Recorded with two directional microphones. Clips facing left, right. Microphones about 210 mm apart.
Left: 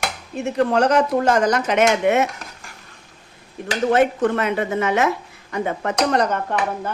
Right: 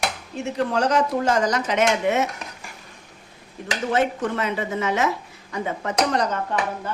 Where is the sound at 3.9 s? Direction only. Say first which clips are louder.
Left 5 dB; 55° left (ahead or behind).